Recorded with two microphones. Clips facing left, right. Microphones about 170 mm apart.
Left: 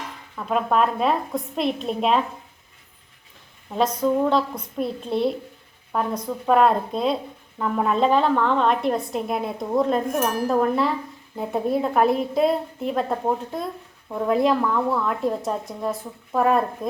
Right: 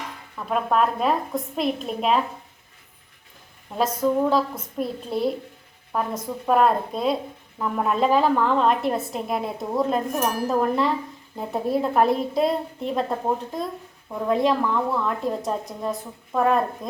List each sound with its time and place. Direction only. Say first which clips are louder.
0.3 s a woman's voice: left 1 dB; centre (ahead or behind)
4.0 s a woman's voice: right 1 dB; centre (ahead or behind)